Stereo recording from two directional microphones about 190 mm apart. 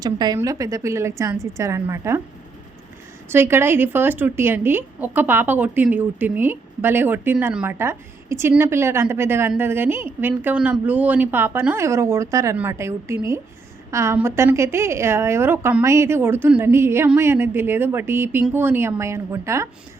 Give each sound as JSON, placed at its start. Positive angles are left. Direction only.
{"t": 0.0, "sound": "a woman's voice", "side_deg": -20}
{"t": 3.2, "sound": "a woman's voice", "side_deg": -10}